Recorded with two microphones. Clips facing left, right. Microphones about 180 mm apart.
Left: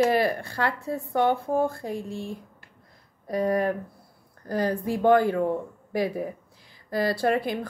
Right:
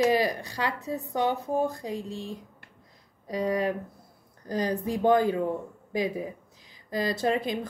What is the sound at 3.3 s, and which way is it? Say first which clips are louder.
Speech: left 3 dB; 50° left (ahead or behind).